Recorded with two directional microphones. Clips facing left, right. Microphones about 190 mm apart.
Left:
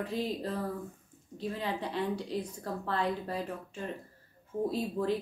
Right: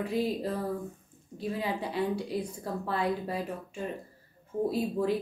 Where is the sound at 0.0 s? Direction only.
10° right (ahead or behind).